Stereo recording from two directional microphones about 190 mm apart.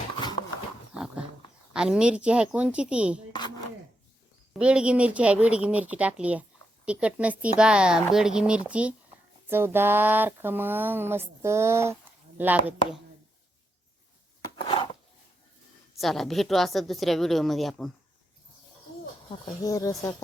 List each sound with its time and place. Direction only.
0.9 s dog: centre (ahead or behind)
1.7 s speech: 5° right (ahead or behind)
4.5 s speech: 5° right (ahead or behind)
16.0 s speech: centre (ahead or behind)
19.3 s speech: 15° left (ahead or behind)